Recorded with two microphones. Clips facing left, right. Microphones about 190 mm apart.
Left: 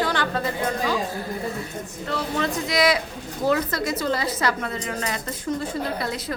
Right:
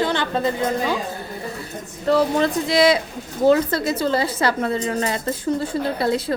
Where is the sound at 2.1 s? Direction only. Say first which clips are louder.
Right 8 dB; 35° right (ahead or behind).